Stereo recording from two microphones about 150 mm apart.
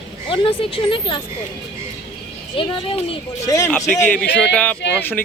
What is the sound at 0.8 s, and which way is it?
Speech, 35° left (ahead or behind).